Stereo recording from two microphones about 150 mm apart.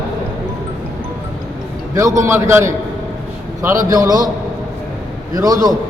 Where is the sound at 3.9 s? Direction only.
25° right (ahead or behind).